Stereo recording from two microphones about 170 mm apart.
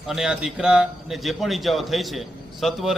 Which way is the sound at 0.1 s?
5° right (ahead or behind).